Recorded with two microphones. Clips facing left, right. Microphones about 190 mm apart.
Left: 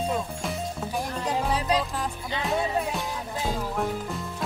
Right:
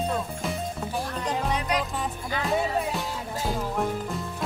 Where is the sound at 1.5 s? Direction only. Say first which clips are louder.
Left 2 dB; 30° left (ahead or behind).